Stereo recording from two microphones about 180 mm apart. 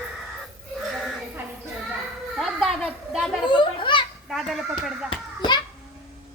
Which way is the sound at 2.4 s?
Centre (ahead or behind).